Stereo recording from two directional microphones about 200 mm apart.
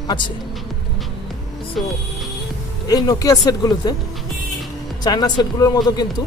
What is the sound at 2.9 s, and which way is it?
Speech, 20° left (ahead or behind).